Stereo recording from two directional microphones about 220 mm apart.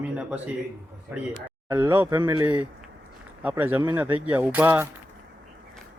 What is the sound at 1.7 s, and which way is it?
Speech, 10° right (ahead or behind).